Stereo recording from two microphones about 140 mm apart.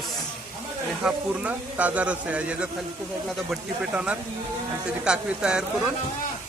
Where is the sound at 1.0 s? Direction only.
10° right (ahead or behind).